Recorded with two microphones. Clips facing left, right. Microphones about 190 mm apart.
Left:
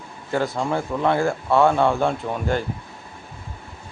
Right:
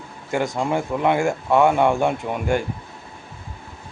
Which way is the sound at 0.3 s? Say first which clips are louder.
Right 1 dB; 15° right (ahead or behind).